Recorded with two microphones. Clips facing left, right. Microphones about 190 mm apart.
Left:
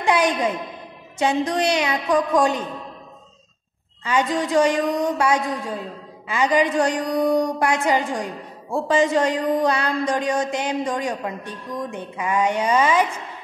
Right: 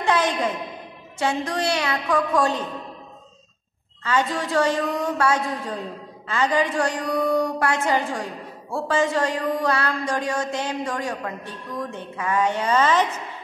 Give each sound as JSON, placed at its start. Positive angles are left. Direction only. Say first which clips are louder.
{"t": 0.0, "sound": "a woman's voice", "louder": "left 2 dB", "side_deg": 15}
{"t": 4.0, "sound": "a woman's voice", "louder": "left 2 dB", "side_deg": 15}